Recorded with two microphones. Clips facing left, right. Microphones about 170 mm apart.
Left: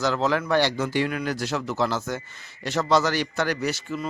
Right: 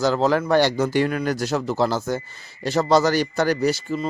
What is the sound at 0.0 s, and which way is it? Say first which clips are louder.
A man's voice: right 4 dB; 35° right (ahead or behind).